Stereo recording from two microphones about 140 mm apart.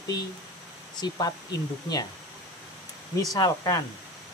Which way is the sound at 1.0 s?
30° left (ahead or behind).